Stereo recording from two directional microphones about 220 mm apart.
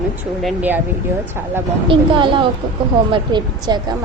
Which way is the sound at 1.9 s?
20° right (ahead or behind).